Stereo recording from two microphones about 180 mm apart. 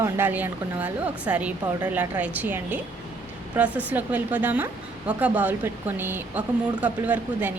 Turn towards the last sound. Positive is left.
turn(degrees=-10)  # may be behind; listen again after turning